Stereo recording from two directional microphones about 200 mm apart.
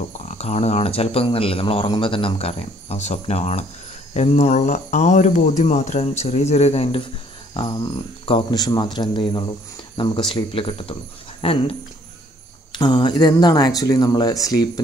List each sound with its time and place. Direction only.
0.4 s speech: 30° left (ahead or behind)
8.3 s speech: 25° left (ahead or behind)
12.7 s speech: 20° left (ahead or behind)